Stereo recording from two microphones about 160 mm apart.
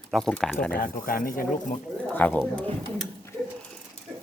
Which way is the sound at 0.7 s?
60° left (ahead or behind).